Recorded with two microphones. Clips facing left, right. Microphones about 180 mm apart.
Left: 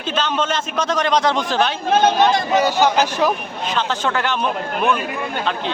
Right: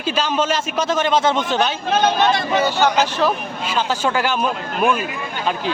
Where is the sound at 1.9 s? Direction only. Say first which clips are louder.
Left 2 dB; 45° left (ahead or behind).